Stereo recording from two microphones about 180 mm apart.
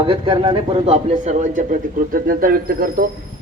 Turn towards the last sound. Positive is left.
turn(degrees=-55)  # may be behind; listen again after turning